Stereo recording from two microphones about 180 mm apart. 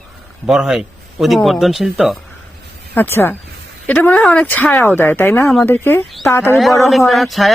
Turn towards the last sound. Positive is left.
turn(degrees=0)  # may be behind; listen again after turning